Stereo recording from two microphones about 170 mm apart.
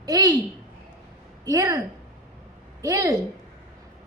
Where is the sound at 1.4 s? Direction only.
20° right (ahead or behind).